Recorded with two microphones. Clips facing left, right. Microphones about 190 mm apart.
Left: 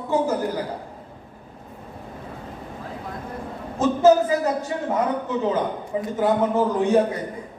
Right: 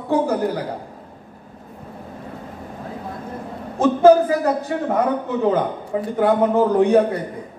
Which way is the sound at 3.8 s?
55° right (ahead or behind).